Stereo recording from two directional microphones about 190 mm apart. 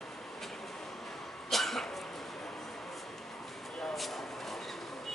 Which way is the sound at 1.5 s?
Centre (ahead or behind).